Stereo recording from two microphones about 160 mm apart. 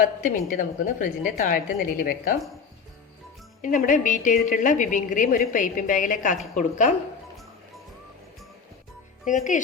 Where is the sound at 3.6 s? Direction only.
55° left (ahead or behind).